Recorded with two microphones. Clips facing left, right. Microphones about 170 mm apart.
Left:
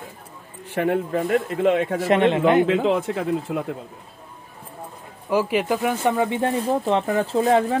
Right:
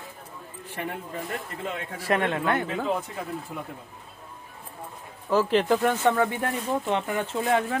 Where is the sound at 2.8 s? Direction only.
90° left.